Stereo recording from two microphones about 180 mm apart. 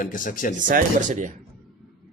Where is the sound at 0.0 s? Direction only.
50° left (ahead or behind).